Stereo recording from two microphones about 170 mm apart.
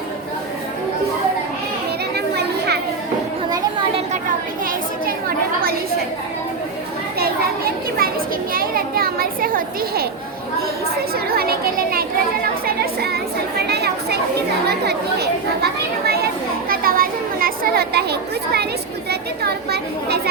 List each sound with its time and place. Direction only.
2.1 s children playing: 70° right (ahead or behind)
7.2 s children playing: 60° right (ahead or behind)
8.5 s a child's voice: 60° right (ahead or behind)
11.1 s a child's voice: 65° right (ahead or behind)